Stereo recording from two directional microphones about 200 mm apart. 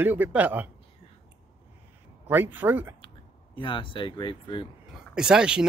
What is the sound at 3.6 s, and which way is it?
Speech, 25° left (ahead or behind).